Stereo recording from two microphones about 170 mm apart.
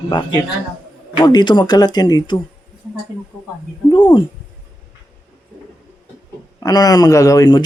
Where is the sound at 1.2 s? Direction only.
25° left (ahead or behind).